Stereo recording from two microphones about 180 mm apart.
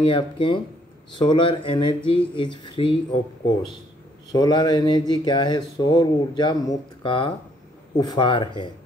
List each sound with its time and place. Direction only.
0.0 s speech: 30° left (ahead or behind)
4.3 s speech: 25° left (ahead or behind)